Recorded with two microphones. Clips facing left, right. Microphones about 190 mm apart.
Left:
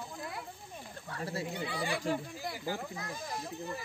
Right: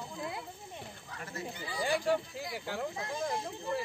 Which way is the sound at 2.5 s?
65° right (ahead or behind).